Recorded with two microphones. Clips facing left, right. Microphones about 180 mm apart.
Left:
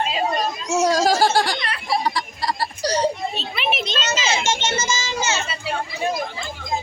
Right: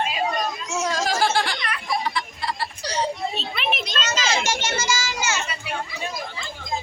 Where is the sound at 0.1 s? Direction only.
30° left (ahead or behind).